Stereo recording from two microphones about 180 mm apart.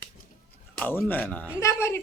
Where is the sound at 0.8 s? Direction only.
10° left (ahead or behind).